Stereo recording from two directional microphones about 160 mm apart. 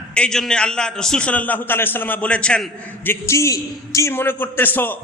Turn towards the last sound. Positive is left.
turn(degrees=10)  # may be behind; listen again after turning